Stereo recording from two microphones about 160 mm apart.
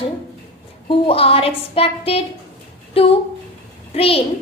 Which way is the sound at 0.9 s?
35° left (ahead or behind).